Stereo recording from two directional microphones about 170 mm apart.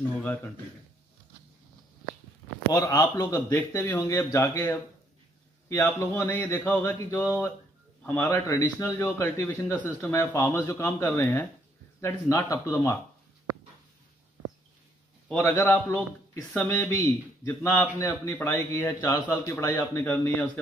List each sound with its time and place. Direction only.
2.7 s a man's voice: 20° left (ahead or behind)
15.2 s a man's voice: 10° left (ahead or behind)